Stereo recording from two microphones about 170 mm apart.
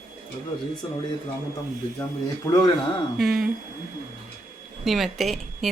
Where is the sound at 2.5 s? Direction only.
15° left (ahead or behind).